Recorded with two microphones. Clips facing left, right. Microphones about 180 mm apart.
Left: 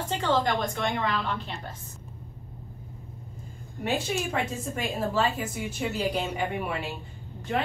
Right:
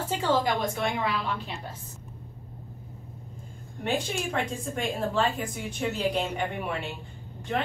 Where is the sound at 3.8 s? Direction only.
5° left (ahead or behind).